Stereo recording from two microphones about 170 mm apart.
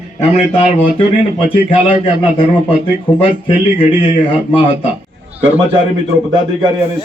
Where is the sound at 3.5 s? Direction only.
35° left (ahead or behind).